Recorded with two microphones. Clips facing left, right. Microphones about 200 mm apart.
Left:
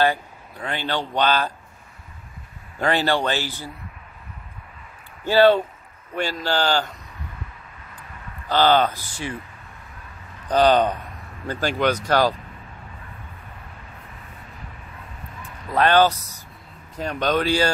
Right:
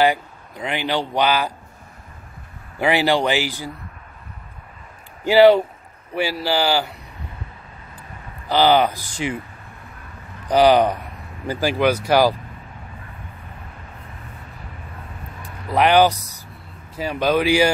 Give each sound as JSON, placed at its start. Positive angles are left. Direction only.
{"t": 0.0, "sound": "speech", "side_deg": -15}
{"t": 2.8, "sound": "speech", "side_deg": -10}
{"t": 5.2, "sound": "speech", "side_deg": -10}
{"t": 8.5, "sound": "speech", "side_deg": -10}
{"t": 10.5, "sound": "speech", "side_deg": -10}
{"t": 15.4, "sound": "vehicle", "side_deg": -10}
{"t": 16.9, "sound": "speech", "side_deg": -5}